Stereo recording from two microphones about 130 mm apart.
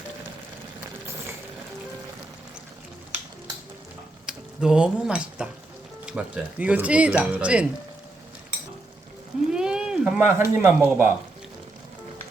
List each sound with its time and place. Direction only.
4.3 s speech: 5° right (ahead or behind)
9.5 s a sound: 5° right (ahead or behind)
10.6 s speech: 15° right (ahead or behind)